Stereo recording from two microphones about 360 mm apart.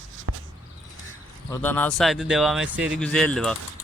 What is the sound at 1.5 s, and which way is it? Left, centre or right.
Speech, centre.